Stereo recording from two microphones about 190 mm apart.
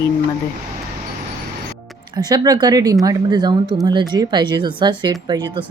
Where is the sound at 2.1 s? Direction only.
20° right (ahead or behind).